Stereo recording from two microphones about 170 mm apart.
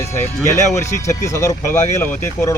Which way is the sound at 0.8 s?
15° left (ahead or behind).